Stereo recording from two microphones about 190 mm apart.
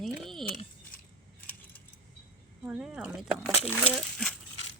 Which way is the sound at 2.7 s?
5° right (ahead or behind).